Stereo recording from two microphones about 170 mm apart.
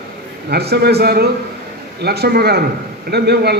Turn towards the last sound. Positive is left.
turn(degrees=-70)  # may be behind; listen again after turning